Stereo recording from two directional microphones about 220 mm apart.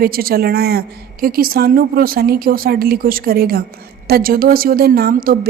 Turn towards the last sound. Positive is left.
turn(degrees=-40)  # may be behind; listen again after turning